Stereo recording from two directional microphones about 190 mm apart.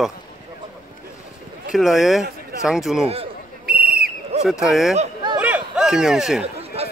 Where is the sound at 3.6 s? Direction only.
50° right (ahead or behind).